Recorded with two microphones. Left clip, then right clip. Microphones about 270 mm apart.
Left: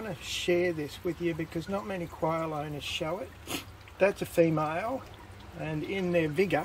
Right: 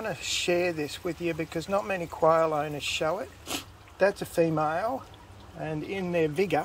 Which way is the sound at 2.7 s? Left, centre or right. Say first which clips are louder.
Right 4 dB; right.